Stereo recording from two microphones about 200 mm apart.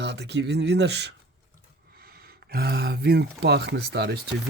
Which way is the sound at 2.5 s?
50° right (ahead or behind).